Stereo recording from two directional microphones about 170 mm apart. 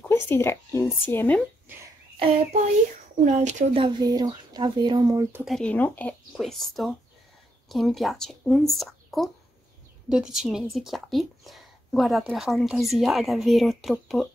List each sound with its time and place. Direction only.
0.1 s speech: 15° left (ahead or behind)
3.3 s speech: 45° right (ahead or behind)
3.8 s speech: 20° right (ahead or behind)
5.4 s speech: 5° left (ahead or behind)